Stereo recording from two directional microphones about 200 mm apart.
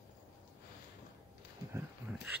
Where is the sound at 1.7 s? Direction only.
10° right (ahead or behind).